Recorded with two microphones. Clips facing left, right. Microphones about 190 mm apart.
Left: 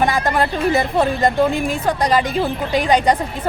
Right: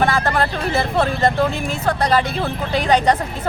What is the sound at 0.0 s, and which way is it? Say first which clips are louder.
Speech: left 1 dB; 15° left (ahead or behind).